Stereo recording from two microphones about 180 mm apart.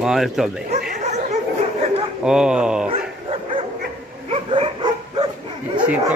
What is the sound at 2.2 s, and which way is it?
Speech, 5° right (ahead or behind).